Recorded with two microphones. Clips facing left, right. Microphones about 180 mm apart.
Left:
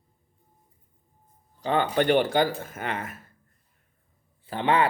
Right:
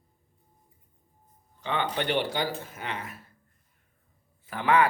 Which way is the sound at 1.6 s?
40° left (ahead or behind).